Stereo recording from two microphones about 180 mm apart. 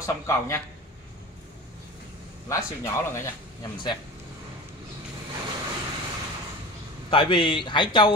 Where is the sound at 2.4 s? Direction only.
15° left (ahead or behind).